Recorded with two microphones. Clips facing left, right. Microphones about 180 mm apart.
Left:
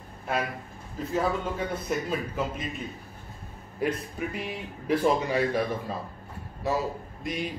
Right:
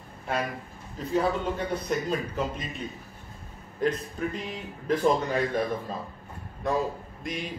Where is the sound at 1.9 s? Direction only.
5° left (ahead or behind).